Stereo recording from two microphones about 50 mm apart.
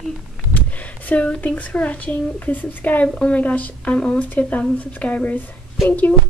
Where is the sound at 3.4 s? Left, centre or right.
Left.